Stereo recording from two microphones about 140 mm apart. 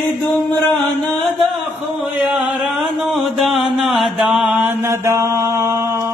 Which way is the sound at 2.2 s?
10° right (ahead or behind).